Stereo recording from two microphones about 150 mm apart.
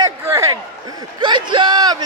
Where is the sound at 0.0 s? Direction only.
20° right (ahead or behind).